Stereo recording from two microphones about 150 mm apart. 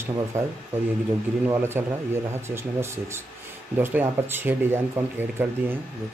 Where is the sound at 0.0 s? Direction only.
20° right (ahead or behind).